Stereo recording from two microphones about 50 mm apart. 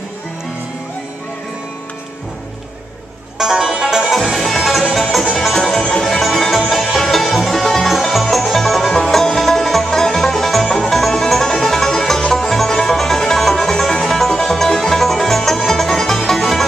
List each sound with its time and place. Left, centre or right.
3.3 s music: centre
5.8 s music: centre
6.0 s music: centre